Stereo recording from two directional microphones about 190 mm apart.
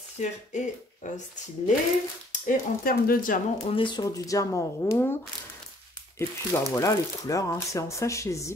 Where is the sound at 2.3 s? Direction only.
45° left (ahead or behind).